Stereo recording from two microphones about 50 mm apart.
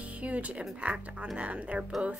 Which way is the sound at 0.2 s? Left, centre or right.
Right.